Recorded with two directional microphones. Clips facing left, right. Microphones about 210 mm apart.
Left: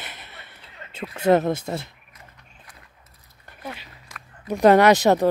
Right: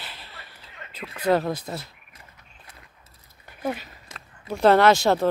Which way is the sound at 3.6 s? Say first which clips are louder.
Right 8 dB; 45° right (ahead or behind).